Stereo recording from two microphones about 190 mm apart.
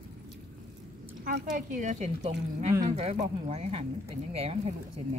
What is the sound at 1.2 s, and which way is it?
Speech, 45° right (ahead or behind).